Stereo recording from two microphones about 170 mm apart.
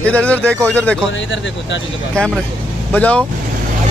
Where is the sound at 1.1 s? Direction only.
90° left.